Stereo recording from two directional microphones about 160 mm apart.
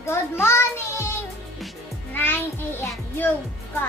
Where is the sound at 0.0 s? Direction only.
15° left (ahead or behind).